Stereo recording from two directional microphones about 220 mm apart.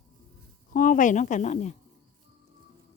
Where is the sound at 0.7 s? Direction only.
40° left (ahead or behind).